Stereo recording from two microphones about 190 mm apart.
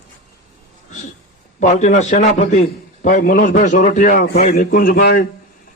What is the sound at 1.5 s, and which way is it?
A man's voice, 40° left (ahead or behind).